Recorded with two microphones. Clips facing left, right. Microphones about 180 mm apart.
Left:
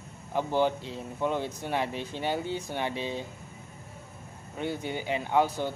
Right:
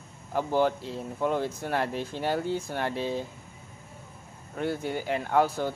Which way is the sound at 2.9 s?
40° right (ahead or behind).